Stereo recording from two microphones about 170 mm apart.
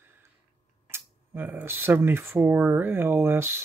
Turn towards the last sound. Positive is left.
turn(degrees=-15)  # may be behind; listen again after turning